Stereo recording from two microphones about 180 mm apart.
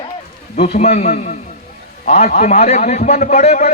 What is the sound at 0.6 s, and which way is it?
A man's voice, 35° left (ahead or behind).